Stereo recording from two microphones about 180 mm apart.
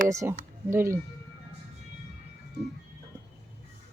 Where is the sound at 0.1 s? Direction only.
15° right (ahead or behind).